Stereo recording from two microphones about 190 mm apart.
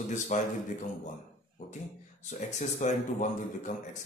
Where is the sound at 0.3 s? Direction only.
40° left (ahead or behind).